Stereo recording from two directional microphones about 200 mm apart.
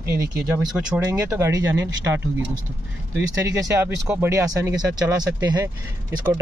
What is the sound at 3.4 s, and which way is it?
Speech, 15° right (ahead or behind).